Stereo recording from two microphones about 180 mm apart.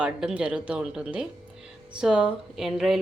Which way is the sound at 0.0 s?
5° right (ahead or behind).